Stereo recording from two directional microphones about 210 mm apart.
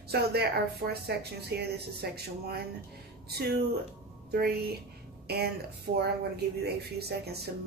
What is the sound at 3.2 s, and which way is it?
Speech, 50° right (ahead or behind).